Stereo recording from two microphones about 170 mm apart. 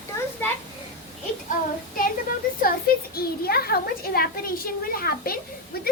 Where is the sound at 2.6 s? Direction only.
60° left (ahead or behind).